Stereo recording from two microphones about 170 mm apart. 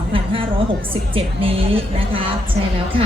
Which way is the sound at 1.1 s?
35° right (ahead or behind).